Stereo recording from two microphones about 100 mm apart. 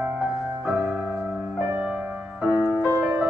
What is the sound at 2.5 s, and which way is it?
Music, 20° right (ahead or behind).